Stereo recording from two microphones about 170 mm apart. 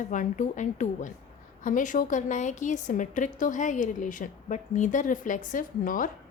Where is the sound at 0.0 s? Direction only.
50° left (ahead or behind).